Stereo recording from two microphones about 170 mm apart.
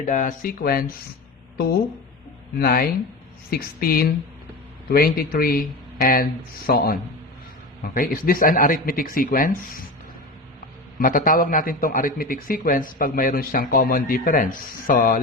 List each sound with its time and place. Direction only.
0.0 s a man's voice: 50° left (ahead or behind)
2.6 s a man's voice: 60° left (ahead or behind)
11.0 s a man's voice: 55° left (ahead or behind)